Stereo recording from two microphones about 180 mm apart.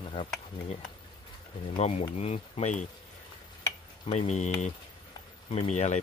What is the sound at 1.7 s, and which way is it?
Speech, 35° left (ahead or behind).